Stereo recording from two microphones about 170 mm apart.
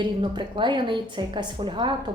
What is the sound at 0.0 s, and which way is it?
A woman's voice, 25° right (ahead or behind).